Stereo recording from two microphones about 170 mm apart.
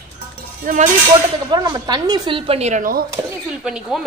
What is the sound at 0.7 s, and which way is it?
Speech, 50° right (ahead or behind).